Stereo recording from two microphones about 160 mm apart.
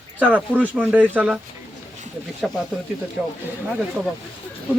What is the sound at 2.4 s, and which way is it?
Speech, centre (ahead or behind).